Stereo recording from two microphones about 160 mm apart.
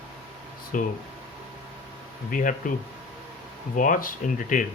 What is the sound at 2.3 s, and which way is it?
Speech, 55° left (ahead or behind).